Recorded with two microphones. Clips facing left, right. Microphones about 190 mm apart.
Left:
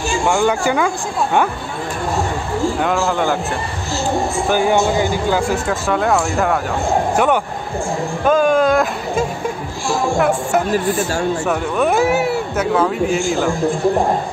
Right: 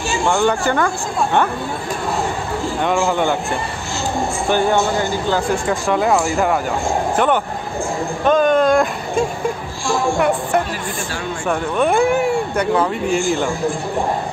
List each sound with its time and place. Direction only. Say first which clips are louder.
0.3 s speech: even; 10° left (ahead or behind)
3.1 s speech: even; centre (ahead or behind)
4.5 s speech: left 1 dB; 10° left (ahead or behind)
8.3 s speech: even; 5° left (ahead or behind)
10.7 s speech: left 8 dB; 45° left (ahead or behind)
11.4 s speech: right 4 dB; 5° left (ahead or behind)